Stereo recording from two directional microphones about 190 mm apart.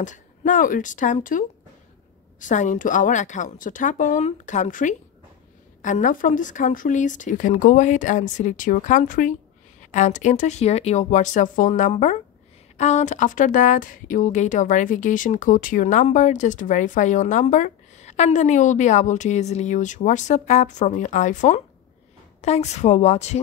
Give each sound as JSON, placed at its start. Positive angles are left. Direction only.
{"t": 0.0, "sound": "speech", "side_deg": 40}
{"t": 2.4, "sound": "speech", "side_deg": 40}